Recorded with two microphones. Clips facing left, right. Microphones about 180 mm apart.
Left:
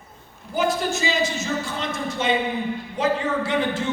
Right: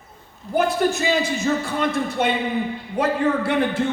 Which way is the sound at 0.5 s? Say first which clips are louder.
Right 3 dB; 55° right (ahead or behind).